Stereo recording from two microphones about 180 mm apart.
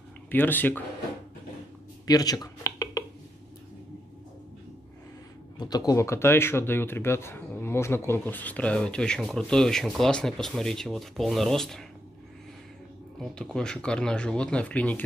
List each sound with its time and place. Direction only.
0.3 s speech: 10° left (ahead or behind)
2.0 s a sound: 20° left (ahead or behind)
5.6 s speech: 20° left (ahead or behind); by 11.8 s centre (ahead or behind)
13.2 s speech: 5° left (ahead or behind)